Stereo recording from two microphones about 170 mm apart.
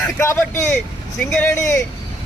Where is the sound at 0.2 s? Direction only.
15° left (ahead or behind).